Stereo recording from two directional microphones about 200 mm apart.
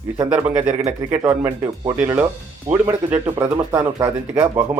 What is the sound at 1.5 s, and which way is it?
Speech, 20° right (ahead or behind).